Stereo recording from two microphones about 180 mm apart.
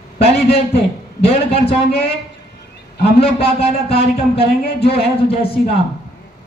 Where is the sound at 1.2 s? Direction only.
35° left (ahead or behind).